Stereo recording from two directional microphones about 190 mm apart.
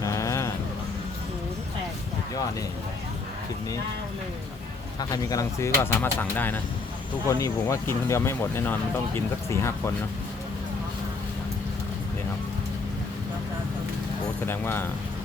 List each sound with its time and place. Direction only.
0.0 s a sound: 15° left (ahead or behind)
4.9 s speech: 20° left (ahead or behind)
14.4 s speech: 10° left (ahead or behind)